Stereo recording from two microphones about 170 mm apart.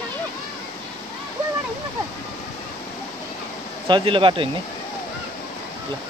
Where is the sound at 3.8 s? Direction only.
30° right (ahead or behind).